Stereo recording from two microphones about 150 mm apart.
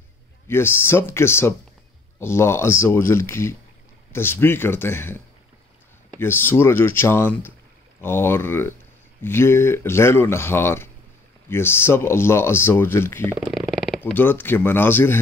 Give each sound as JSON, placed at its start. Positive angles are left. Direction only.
{"t": 0.5, "sound": "speech", "side_deg": 15}
{"t": 13.4, "sound": "a sound", "side_deg": 0}
{"t": 14.1, "sound": "speech", "side_deg": 15}